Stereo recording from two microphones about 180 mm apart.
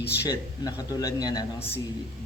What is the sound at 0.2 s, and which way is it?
A man's voice, 20° left (ahead or behind).